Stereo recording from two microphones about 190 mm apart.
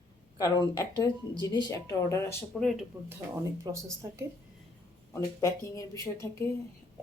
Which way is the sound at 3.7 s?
20° right (ahead or behind).